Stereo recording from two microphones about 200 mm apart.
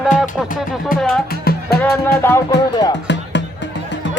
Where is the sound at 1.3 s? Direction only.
50° left (ahead or behind).